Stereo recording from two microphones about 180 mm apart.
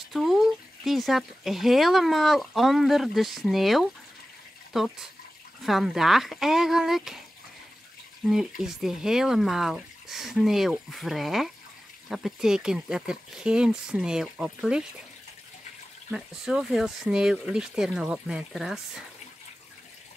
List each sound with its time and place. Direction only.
0.1 s speech: centre (ahead or behind)
8.3 s speech: centre (ahead or behind)
16.1 s speech: 5° right (ahead or behind)